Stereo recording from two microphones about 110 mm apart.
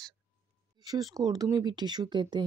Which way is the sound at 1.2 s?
35° right (ahead or behind).